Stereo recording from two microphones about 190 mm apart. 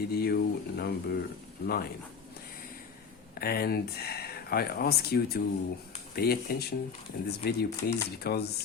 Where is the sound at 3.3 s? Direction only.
55° left (ahead or behind).